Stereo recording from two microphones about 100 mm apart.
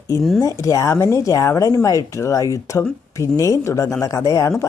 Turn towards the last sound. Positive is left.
turn(degrees=30)  # may be behind; listen again after turning